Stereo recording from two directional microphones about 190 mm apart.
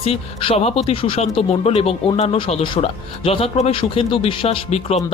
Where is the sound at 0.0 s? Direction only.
30° left (ahead or behind).